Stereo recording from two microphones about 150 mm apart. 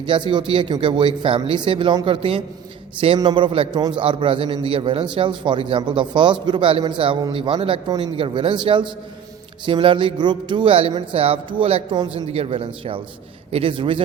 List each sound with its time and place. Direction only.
0.0 s speech: 35° right (ahead or behind)